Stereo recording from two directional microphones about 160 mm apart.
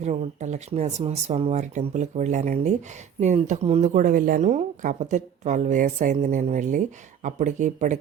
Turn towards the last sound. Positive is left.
turn(degrees=-50)  # may be behind; listen again after turning